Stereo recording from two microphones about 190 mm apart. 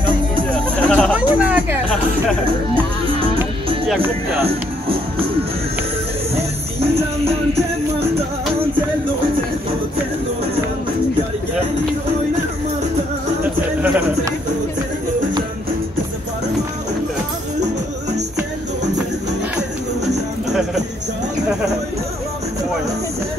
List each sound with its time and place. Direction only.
0.0 s music: 25° right (ahead or behind)
0.5 s a sound: 5° left (ahead or behind)
1.1 s music: 5° right (ahead or behind)
13.4 s music: 10° right (ahead or behind)